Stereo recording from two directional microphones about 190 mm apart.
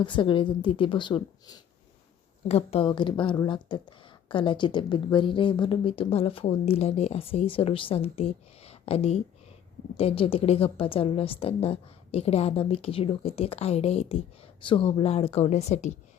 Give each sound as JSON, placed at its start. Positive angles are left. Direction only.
{"t": 0.0, "sound": "a woman's voice", "side_deg": 25}